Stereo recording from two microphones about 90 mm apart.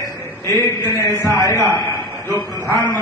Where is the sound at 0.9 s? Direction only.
30° left (ahead or behind).